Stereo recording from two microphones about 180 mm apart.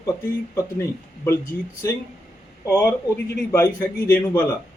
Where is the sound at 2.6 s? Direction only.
15° left (ahead or behind).